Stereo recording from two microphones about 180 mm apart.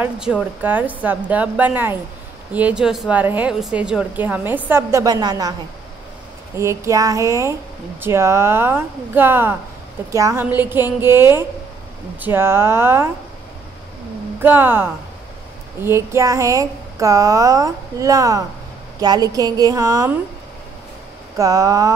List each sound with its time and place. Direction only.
0.0 s a woman's voice: 5° right (ahead or behind); by 5.5 s 20° right (ahead or behind)
6.5 s a woman's voice: 15° right (ahead or behind)
14.4 s a woman's voice: 10° right (ahead or behind)
21.4 s a woman's voice: 20° right (ahead or behind)